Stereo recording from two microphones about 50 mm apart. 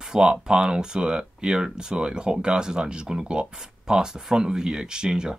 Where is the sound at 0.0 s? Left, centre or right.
Centre.